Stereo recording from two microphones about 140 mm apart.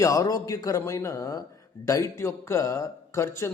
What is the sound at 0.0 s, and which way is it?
A man's voice, 25° left (ahead or behind).